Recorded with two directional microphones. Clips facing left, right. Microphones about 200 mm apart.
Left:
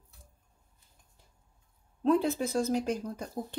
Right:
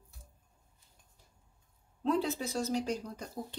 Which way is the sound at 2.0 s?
50° left (ahead or behind).